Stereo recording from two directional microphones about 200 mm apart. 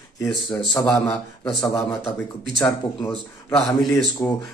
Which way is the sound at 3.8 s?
10° left (ahead or behind).